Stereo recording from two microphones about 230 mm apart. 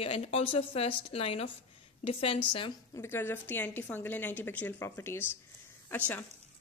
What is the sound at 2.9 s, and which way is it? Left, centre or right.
A woman's voice, centre.